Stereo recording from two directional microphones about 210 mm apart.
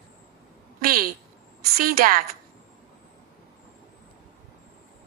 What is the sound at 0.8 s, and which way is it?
Speech, 45° right (ahead or behind).